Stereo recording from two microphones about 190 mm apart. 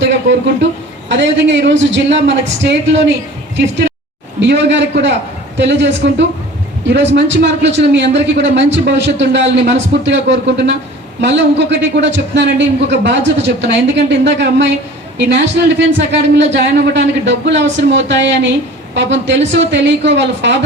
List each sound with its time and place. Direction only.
0.0 s a sound: 70° right (ahead or behind)
1.0 s a man's voice: 70° right (ahead or behind)
4.4 s a man's voice: 70° right (ahead or behind)